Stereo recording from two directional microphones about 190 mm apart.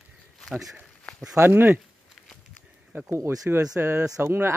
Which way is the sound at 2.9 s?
15° right (ahead or behind).